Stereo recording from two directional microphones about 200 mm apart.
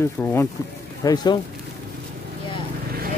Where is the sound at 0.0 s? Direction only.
10° left (ahead or behind).